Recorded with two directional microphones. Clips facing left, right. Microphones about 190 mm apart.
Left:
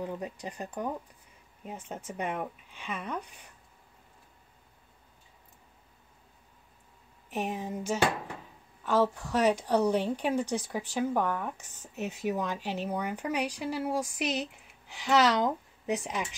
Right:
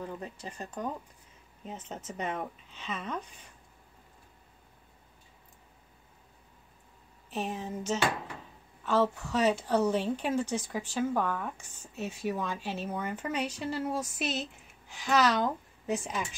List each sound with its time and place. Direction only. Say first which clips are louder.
0.0 s speech: left 3 dB; 15° left (ahead or behind)
7.2 s speech: left 2 dB; 15° left (ahead or behind)